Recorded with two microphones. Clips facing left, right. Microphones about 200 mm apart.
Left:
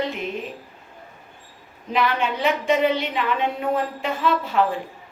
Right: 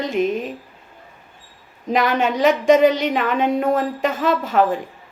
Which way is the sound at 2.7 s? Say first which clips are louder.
Right 7 dB; 45° right (ahead or behind).